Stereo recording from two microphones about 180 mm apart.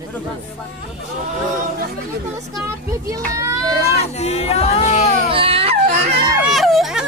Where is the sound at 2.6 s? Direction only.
20° right (ahead or behind).